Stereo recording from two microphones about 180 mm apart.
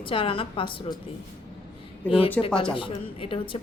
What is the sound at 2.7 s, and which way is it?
Speech, 30° left (ahead or behind).